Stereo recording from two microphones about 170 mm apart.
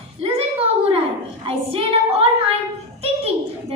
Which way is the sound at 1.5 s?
35° right (ahead or behind).